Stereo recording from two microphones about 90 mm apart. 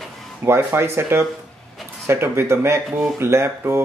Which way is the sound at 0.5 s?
25° right (ahead or behind).